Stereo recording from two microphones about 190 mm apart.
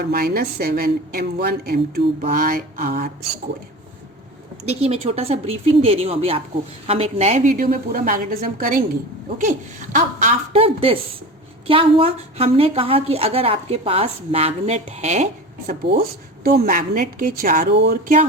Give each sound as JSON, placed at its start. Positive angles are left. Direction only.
{"t": 0.0, "sound": "a woman's voice", "side_deg": -50}
{"t": 4.6, "sound": "a woman's voice", "side_deg": -30}
{"t": 10.5, "sound": "a woman's voice", "side_deg": -30}
{"t": 15.9, "sound": "a woman's voice", "side_deg": -55}